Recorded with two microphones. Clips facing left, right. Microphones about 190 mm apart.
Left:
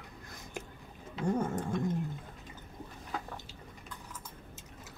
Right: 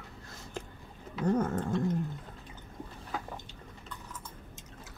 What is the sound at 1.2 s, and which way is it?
Speech, 10° left (ahead or behind).